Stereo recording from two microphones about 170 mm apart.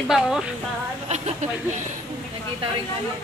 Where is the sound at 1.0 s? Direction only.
40° right (ahead or behind).